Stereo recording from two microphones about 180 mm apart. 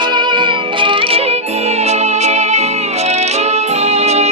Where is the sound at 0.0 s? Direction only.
25° right (ahead or behind).